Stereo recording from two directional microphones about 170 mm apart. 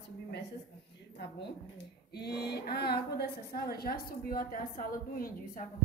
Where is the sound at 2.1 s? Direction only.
70° left (ahead or behind); by 5.7 s 55° left (ahead or behind).